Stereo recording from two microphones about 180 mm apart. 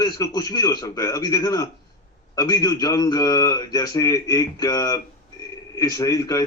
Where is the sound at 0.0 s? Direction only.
20° left (ahead or behind).